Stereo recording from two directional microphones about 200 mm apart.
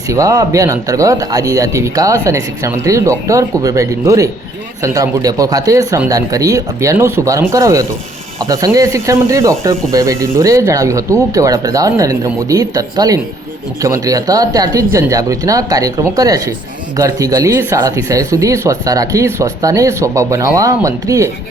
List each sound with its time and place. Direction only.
0.1 s speech: 15° right (ahead or behind)